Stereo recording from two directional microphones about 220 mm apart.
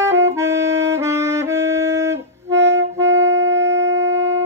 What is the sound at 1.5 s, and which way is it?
Music, 50° right (ahead or behind).